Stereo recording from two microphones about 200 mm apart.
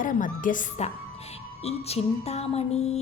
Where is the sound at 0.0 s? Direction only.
40° left (ahead or behind).